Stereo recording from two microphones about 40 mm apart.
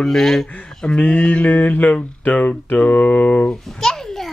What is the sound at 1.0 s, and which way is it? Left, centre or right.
Speech, left.